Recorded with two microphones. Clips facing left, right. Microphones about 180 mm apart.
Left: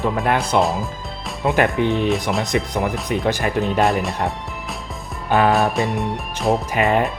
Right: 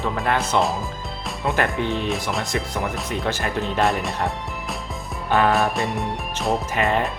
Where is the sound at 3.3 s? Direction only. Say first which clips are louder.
Left 5 dB; 15° left (ahead or behind).